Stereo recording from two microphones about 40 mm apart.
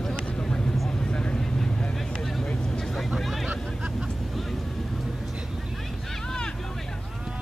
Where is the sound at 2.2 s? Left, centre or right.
Centre.